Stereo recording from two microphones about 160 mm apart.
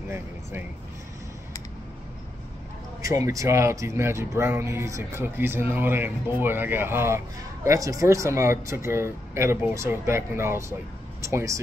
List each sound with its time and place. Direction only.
0.1 s speech: 15° right (ahead or behind)
3.2 s speech: 20° right (ahead or behind)